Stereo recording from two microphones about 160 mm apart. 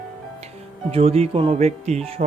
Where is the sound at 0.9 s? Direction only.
35° right (ahead or behind).